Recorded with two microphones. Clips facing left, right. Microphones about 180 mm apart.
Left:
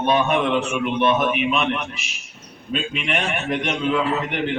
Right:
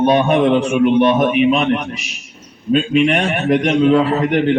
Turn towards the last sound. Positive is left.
turn(degrees=-35)  # may be behind; listen again after turning